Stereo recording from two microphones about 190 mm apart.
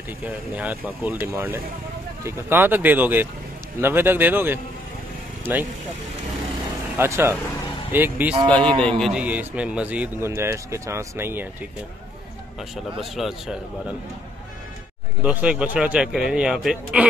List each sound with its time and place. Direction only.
0.2 s a man's voice: 10° right (ahead or behind)
7.0 s a man's voice: 10° right (ahead or behind)
8.5 s a man's voice: 5° left (ahead or behind); by 11.4 s 10° right (ahead or behind)
13.0 s speech: centre (ahead or behind)
15.2 s speech: 5° right (ahead or behind)